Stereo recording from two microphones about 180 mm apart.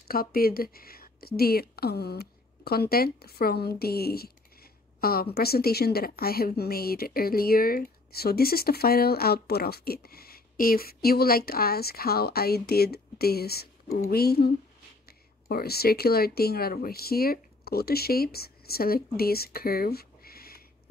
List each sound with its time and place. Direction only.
0.1 s a woman's voice: 55° left (ahead or behind)